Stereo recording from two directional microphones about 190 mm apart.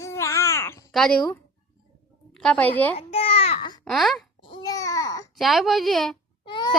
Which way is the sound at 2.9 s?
30° left (ahead or behind).